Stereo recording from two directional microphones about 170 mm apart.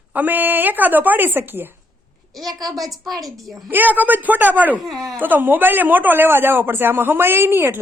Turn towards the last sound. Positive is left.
turn(degrees=-15)  # may be behind; listen again after turning